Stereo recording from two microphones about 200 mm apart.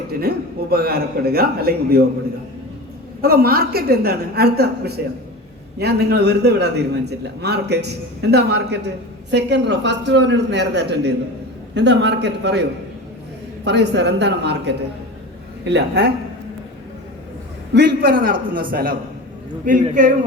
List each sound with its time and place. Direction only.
0.2 s a man's voice: 50° right (ahead or behind)
3.2 s a man's voice: 50° right (ahead or behind)
13.7 s a man's voice: 60° right (ahead or behind)
17.7 s a man's voice: 50° right (ahead or behind)